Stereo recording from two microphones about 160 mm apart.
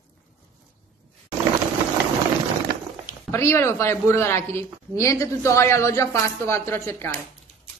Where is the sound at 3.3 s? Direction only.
15° left (ahead or behind).